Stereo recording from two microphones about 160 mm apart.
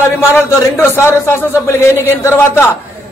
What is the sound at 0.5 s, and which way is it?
A man's voice, 15° left (ahead or behind).